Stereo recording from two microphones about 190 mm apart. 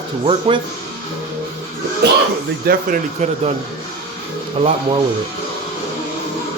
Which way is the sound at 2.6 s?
55° right (ahead or behind).